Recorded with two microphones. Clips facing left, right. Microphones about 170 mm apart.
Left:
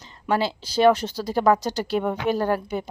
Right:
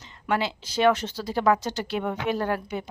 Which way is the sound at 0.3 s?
35° left (ahead or behind).